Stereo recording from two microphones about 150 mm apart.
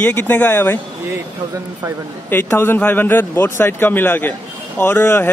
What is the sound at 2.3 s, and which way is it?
Speech, 15° left (ahead or behind).